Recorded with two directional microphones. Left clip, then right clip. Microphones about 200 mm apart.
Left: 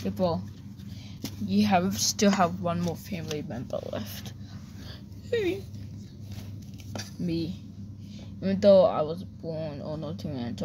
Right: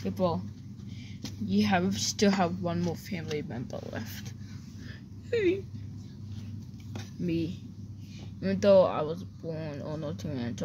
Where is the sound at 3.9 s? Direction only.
20° left (ahead or behind).